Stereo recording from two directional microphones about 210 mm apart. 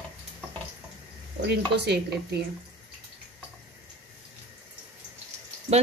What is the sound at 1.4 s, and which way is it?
Speech, 55° right (ahead or behind).